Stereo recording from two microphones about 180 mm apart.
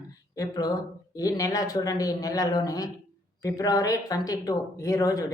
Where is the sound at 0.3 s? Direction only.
20° left (ahead or behind).